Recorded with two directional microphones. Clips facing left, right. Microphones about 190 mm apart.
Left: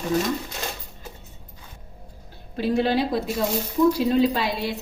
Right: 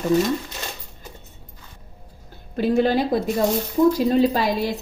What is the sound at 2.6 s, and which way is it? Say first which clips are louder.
A woman's voice: right 3 dB; 45° right (ahead or behind).